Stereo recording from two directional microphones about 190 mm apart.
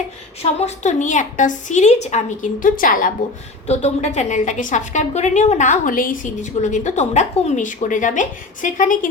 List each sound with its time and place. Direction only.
0.6 s a woman's voice: 40° left (ahead or behind)
3.7 s a woman's voice: 35° left (ahead or behind)